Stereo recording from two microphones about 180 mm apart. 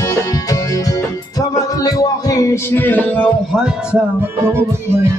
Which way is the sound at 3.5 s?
5° right (ahead or behind).